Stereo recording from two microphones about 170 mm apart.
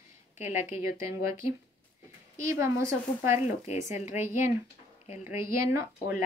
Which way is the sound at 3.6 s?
40° left (ahead or behind).